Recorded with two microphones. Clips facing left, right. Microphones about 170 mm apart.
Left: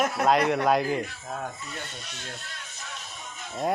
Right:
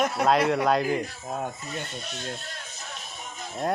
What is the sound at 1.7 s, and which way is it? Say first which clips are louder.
Speech: right 4 dB; 40° right (ahead or behind).